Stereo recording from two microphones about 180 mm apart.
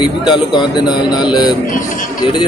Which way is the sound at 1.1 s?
25° left (ahead or behind).